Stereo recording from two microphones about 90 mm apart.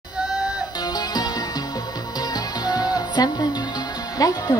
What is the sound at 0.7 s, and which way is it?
Music, 45° left (ahead or behind).